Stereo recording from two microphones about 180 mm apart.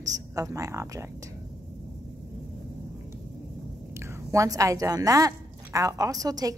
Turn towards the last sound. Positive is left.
turn(degrees=-20)  # may be behind; listen again after turning